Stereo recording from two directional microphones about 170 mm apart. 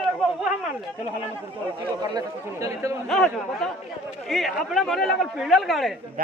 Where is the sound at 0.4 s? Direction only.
5° right (ahead or behind).